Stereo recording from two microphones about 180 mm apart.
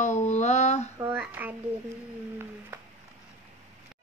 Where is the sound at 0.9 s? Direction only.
10° right (ahead or behind).